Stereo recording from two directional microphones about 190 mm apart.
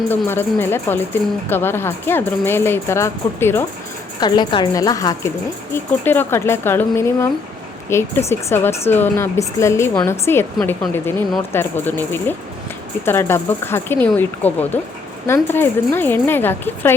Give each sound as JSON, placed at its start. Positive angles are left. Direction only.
{"t": 0.3, "sound": "a woman's voice", "side_deg": 10}